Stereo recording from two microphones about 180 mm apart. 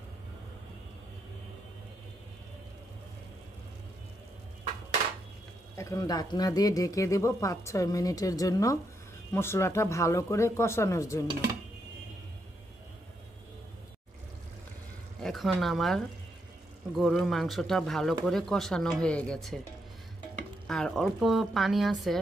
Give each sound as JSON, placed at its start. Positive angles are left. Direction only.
{"t": 5.8, "sound": "speech", "side_deg": 20}
{"t": 15.2, "sound": "speech", "side_deg": 0}
{"t": 20.6, "sound": "speech", "side_deg": 5}